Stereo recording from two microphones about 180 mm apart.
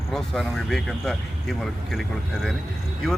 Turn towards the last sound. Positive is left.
turn(degrees=0)  # may be behind; listen again after turning